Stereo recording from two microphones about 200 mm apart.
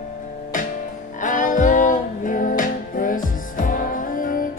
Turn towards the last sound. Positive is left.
turn(degrees=45)  # may be behind; listen again after turning